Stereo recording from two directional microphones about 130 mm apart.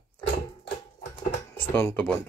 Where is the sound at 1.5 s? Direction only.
20° left (ahead or behind).